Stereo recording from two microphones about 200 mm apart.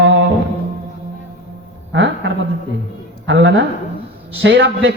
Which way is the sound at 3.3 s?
65° right (ahead or behind).